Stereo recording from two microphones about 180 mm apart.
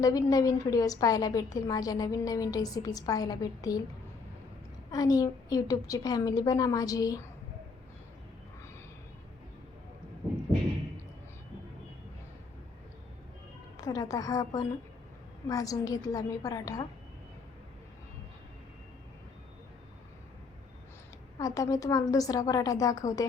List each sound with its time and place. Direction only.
0.0 s a woman's voice: 20° left (ahead or behind)
4.9 s a woman's voice: 20° left (ahead or behind)
13.7 s a woman's voice: 20° left (ahead or behind)
21.3 s a woman's voice: 20° left (ahead or behind)